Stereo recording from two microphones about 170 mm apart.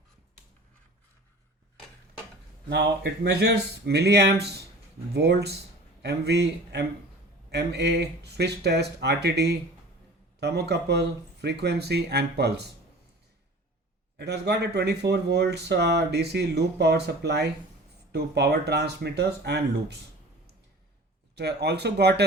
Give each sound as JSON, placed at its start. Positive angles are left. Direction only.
{"t": 2.6, "sound": "speech", "side_deg": -75}
{"t": 14.2, "sound": "speech", "side_deg": -80}
{"t": 21.3, "sound": "speech", "side_deg": -75}